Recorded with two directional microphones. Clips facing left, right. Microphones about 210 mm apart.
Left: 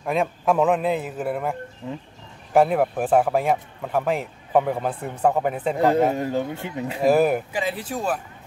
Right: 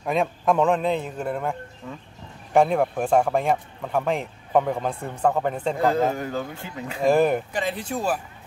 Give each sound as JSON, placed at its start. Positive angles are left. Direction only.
{"t": 0.0, "sound": "speech", "side_deg": 0}
{"t": 1.8, "sound": "speech", "side_deg": 20}
{"t": 2.5, "sound": "speech", "side_deg": 5}
{"t": 5.8, "sound": "speech", "side_deg": 20}
{"t": 7.0, "sound": "speech", "side_deg": 5}